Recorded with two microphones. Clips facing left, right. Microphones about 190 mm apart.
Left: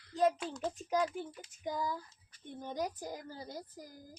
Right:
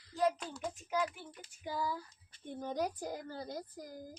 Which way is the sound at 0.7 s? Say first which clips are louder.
Left 2 dB; 35° left (ahead or behind).